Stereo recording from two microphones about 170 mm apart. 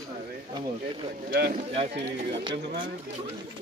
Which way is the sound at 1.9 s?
85° right.